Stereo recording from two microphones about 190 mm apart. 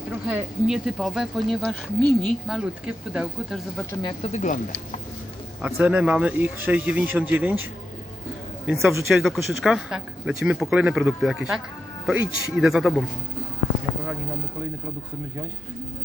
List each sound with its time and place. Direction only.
0.3 s speech: 5° right (ahead or behind)
4.0 s speech: 35° left (ahead or behind)
5.6 s speech: 5° right (ahead or behind)
8.6 s speech: centre (ahead or behind)